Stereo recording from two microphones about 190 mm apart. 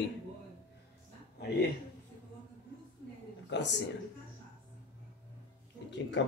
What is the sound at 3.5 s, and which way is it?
Speech, 65° left (ahead or behind).